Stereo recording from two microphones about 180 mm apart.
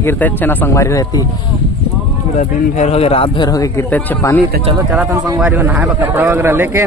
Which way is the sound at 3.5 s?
15° left (ahead or behind).